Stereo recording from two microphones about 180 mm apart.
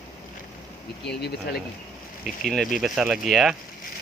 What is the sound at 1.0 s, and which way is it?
Speech, 65° left (ahead or behind).